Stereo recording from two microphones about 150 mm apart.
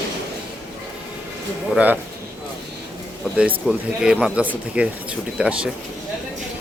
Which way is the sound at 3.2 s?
5° right (ahead or behind).